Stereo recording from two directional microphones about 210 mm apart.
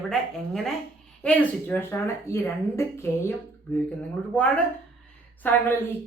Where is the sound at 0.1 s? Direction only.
Centre (ahead or behind).